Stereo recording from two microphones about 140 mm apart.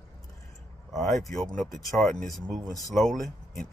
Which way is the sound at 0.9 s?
Centre (ahead or behind).